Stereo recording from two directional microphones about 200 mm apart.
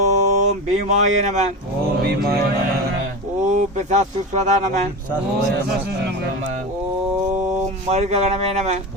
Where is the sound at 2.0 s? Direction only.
50° right (ahead or behind).